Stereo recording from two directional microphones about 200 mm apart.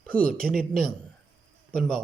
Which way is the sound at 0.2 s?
45° right (ahead or behind).